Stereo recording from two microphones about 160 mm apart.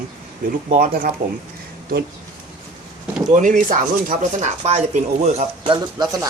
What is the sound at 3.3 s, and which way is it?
Speech, 55° right (ahead or behind).